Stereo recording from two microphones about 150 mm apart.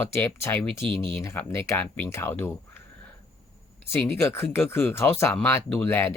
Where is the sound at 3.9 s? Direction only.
15° left (ahead or behind).